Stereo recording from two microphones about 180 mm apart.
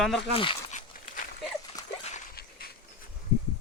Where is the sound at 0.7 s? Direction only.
45° left (ahead or behind).